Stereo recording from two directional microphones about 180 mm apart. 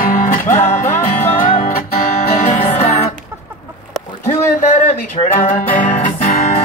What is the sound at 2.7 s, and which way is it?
Music, 35° left (ahead or behind).